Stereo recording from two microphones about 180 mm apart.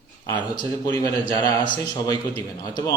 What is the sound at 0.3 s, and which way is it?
A man's voice, 20° left (ahead or behind).